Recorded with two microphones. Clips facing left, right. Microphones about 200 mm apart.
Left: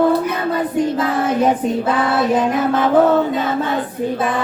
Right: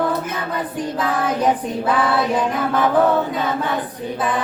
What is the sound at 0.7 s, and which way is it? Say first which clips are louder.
Music: left 3 dB; 25° left (ahead or behind).